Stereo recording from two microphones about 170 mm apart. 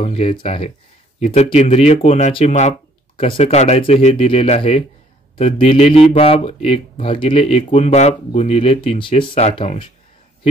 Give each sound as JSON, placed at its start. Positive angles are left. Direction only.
{"t": 0.0, "sound": "speech", "side_deg": 35}